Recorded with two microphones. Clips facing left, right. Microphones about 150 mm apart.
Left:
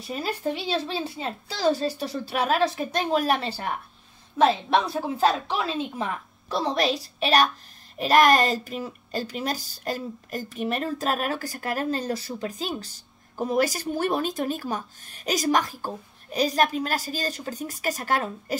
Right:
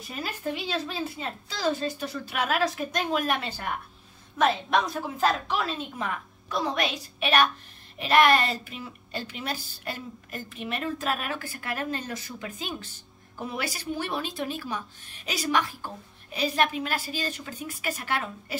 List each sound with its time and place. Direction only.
0.1 s a woman's voice: 35° left (ahead or behind)